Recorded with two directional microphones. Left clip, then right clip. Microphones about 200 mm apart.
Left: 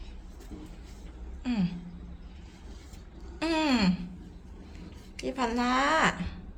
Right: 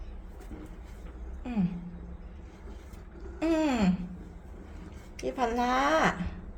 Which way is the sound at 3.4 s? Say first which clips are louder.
Even; 5° right (ahead or behind).